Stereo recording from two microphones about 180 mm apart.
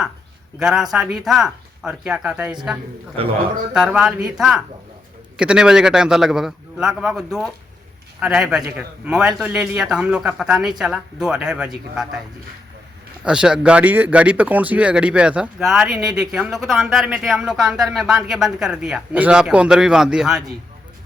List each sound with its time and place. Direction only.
0.6 s speech: centre (ahead or behind)
3.8 s speech: 5° right (ahead or behind)
13.2 s speech: 5° right (ahead or behind)